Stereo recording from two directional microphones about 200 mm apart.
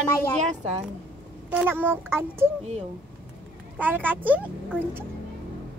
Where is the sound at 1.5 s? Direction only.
10° right (ahead or behind).